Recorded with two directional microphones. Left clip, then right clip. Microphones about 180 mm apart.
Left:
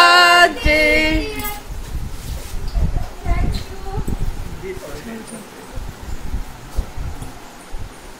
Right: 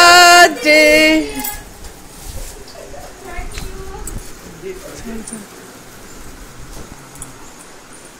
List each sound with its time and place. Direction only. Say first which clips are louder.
0.0 s music: right 4 dB; 20° right (ahead or behind)